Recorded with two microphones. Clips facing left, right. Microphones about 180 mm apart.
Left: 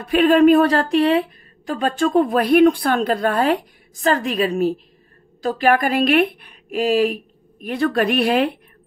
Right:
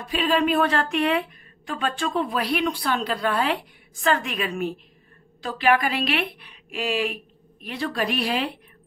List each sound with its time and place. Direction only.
0.0 s speech: 60° left (ahead or behind); by 7.2 s 40° left (ahead or behind)
7.6 s speech: 50° left (ahead or behind)